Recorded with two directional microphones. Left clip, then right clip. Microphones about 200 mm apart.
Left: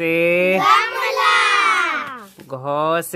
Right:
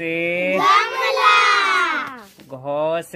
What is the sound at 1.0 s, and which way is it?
Music, 10° right (ahead or behind).